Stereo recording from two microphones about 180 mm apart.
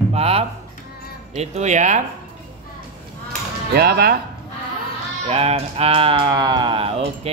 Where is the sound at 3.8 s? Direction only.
60° right (ahead or behind).